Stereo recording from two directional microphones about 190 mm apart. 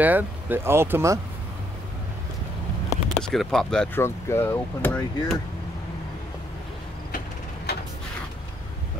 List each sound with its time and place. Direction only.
0.0 s speech: 10° right (ahead or behind)
3.2 s speech: 5° left (ahead or behind)
7.7 s a sound: 60° left (ahead or behind)